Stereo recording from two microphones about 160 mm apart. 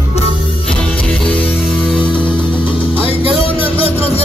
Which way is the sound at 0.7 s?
5° left (ahead or behind).